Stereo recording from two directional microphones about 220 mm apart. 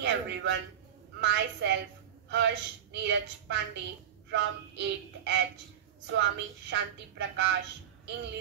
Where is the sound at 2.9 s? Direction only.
50° right (ahead or behind).